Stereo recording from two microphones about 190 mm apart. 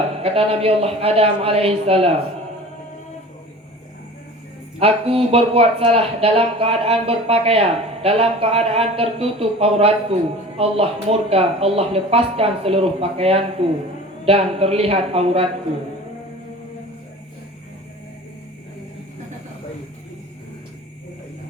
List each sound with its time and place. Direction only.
0.2 s speech: 30° right (ahead or behind)
4.8 s speech: 30° right (ahead or behind)